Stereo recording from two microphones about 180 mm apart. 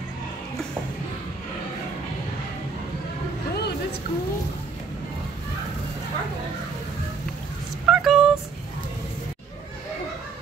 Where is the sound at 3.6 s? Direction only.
65° left (ahead or behind).